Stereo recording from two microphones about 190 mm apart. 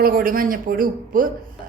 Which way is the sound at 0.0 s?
50° right (ahead or behind).